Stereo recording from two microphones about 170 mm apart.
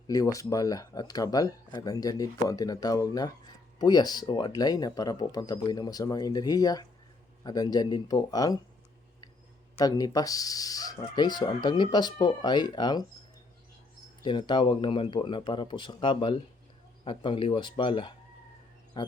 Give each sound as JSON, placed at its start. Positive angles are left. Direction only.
{"t": 0.1, "sound": "speech", "side_deg": 20}
{"t": 9.7, "sound": "speech", "side_deg": 20}
{"t": 14.2, "sound": "speech", "side_deg": 25}